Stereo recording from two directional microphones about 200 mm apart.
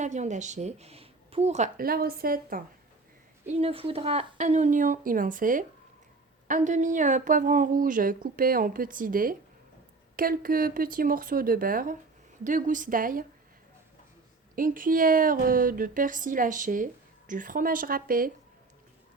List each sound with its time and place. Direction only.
0.0 s speech: 35° right (ahead or behind)
3.4 s speech: 30° right (ahead or behind)
14.5 s speech: 45° right (ahead or behind)